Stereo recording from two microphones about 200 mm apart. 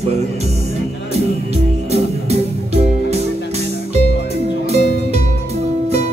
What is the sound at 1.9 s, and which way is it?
Music, 30° right (ahead or behind).